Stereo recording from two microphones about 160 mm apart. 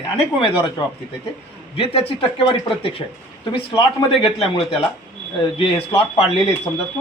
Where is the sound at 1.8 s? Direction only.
35° left (ahead or behind).